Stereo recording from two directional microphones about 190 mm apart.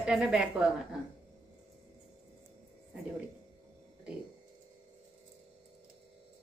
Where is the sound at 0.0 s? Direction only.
5° right (ahead or behind).